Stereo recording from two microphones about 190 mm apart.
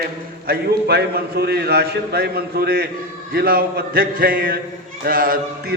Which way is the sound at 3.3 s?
50° right (ahead or behind).